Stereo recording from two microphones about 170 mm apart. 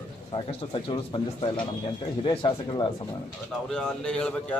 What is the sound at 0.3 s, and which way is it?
Speech, 30° left (ahead or behind).